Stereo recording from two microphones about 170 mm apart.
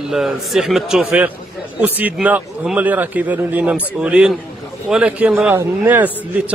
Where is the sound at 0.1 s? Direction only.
Centre (ahead or behind).